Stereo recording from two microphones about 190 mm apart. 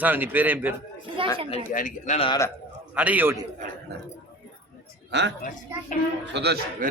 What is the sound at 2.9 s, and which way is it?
Speech, 10° right (ahead or behind).